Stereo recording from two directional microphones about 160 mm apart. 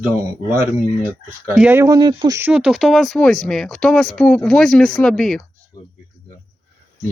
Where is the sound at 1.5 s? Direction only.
15° right (ahead or behind).